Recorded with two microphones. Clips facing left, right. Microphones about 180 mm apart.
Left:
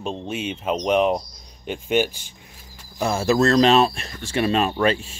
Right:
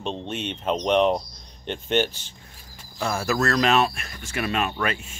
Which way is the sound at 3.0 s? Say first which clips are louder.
Left 5 dB; 25° left (ahead or behind).